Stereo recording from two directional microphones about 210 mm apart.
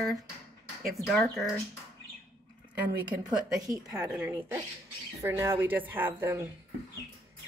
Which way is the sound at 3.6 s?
15° right (ahead or behind).